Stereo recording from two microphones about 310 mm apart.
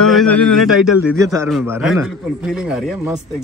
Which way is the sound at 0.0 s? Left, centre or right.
Centre.